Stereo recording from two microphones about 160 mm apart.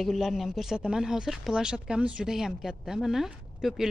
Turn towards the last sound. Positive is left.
turn(degrees=0)  # may be behind; listen again after turning